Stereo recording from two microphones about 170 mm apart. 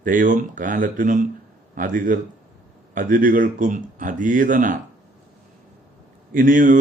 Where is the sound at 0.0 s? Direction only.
50° right (ahead or behind).